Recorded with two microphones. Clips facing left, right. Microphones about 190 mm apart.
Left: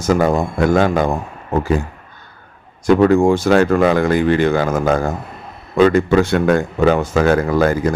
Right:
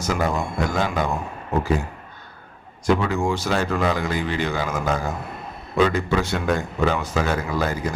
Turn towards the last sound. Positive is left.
turn(degrees=55)  # may be behind; listen again after turning